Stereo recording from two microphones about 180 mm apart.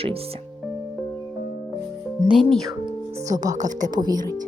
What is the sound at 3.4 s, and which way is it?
Speech, 45° right (ahead or behind).